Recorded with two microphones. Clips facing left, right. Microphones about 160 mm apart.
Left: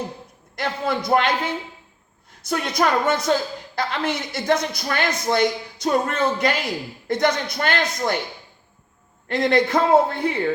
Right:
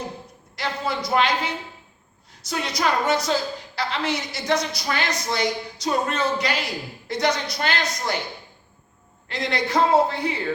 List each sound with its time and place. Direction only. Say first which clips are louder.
0.5 s a woman's voice: left 3 dB; 50° left (ahead or behind)
9.3 s a woman's voice: left 5 dB; 50° left (ahead or behind)